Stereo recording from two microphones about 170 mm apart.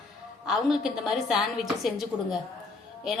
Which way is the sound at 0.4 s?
5° right (ahead or behind).